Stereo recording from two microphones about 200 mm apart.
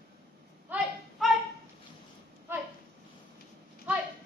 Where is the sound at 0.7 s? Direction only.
10° right (ahead or behind).